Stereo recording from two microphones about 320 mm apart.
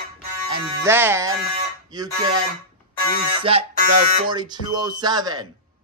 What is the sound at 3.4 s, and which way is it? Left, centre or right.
Music, centre.